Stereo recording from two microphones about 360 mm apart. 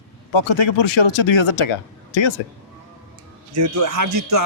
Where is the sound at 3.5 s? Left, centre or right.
Right.